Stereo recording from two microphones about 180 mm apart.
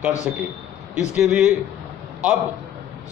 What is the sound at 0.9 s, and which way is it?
Speech, 5° right (ahead or behind).